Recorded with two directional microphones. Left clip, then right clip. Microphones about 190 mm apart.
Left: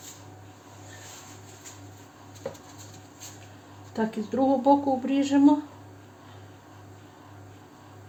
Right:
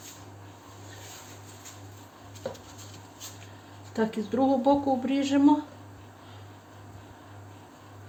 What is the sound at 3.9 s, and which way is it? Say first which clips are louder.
Speech: even; 15° left (ahead or behind).